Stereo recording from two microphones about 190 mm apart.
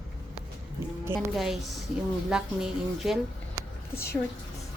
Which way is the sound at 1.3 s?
Centre (ahead or behind).